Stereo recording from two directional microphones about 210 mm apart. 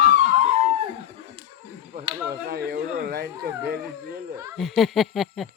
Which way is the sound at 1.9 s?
45° right (ahead or behind).